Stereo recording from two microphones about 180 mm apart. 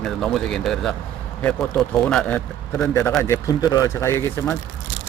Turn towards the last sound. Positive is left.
turn(degrees=10)  # may be behind; listen again after turning